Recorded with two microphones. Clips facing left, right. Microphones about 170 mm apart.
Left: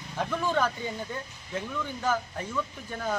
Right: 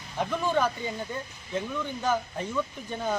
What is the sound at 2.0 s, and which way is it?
Speech, 15° right (ahead or behind).